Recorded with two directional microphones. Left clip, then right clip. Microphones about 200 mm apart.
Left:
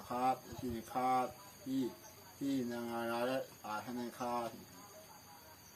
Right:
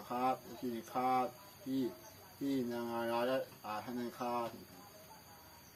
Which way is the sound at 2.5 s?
15° left (ahead or behind).